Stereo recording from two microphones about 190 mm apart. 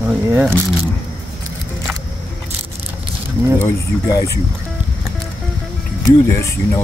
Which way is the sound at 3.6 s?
15° left (ahead or behind).